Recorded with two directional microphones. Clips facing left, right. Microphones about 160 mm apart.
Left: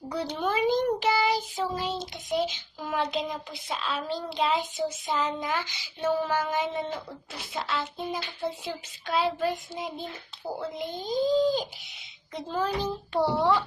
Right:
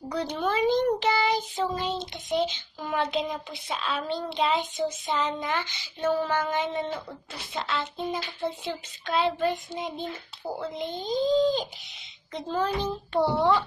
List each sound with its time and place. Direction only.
0.1 s a child's voice: 10° left (ahead or behind)
10.9 s speech: 25° right (ahead or behind)
11.3 s a child's voice: 5° left (ahead or behind)